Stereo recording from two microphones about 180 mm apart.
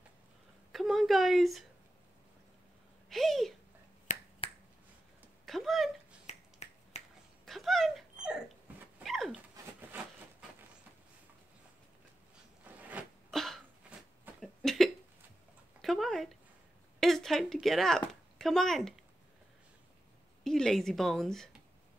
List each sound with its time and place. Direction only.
0.7 s a woman's voice: centre (ahead or behind)
3.1 s speech: centre (ahead or behind)
4.1 s finger snapping: 45° left (ahead or behind)
5.4 s a sound: centre (ahead or behind)
6.2 s finger snapping: 40° left (ahead or behind)
7.4 s dog: centre (ahead or behind)
9.8 s a sound: 10° right (ahead or behind)
12.7 s a sound: 10° right (ahead or behind)
13.3 s cough: centre (ahead or behind)
15.8 s a sound: centre (ahead or behind)
17.0 s speech: centre (ahead or behind)
20.4 s a woman's voice: 5° left (ahead or behind)